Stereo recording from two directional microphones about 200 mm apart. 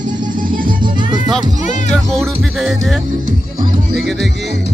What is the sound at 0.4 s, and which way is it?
Music, 45° right (ahead or behind).